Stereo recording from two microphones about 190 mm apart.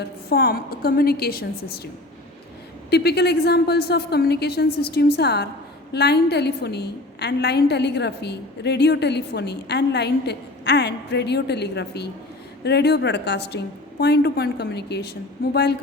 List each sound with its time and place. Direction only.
0.0 s a woman's voice: 55° left (ahead or behind)
2.9 s a woman's voice: 60° left (ahead or behind)